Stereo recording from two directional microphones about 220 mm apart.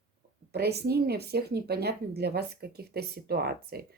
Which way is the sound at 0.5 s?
45° right (ahead or behind).